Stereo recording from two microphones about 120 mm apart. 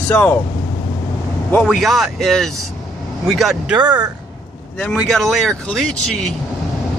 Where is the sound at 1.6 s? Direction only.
Centre (ahead or behind).